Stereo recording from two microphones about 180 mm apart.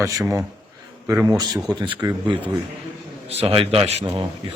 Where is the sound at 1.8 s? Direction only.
25° right (ahead or behind).